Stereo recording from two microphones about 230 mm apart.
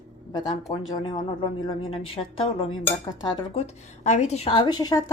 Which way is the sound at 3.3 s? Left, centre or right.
Left.